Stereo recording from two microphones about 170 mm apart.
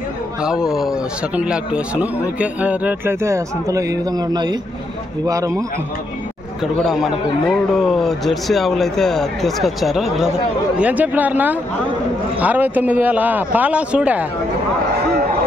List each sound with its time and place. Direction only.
0.4 s a man's voice: 5° right (ahead or behind); by 5.5 s 20° right (ahead or behind)
6.6 s a man's voice: centre (ahead or behind)